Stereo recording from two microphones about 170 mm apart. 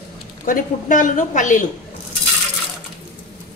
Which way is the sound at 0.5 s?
50° left (ahead or behind).